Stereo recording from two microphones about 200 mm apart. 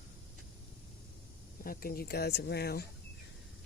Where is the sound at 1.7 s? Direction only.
50° left (ahead or behind).